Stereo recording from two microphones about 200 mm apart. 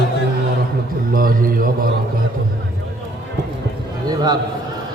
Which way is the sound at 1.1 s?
45° right (ahead or behind).